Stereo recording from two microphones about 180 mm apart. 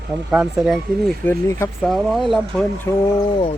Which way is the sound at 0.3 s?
5° right (ahead or behind).